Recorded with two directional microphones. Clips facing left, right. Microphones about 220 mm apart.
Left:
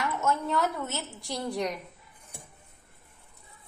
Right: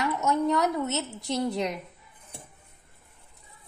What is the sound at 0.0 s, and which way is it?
A woman's voice, 20° right (ahead or behind).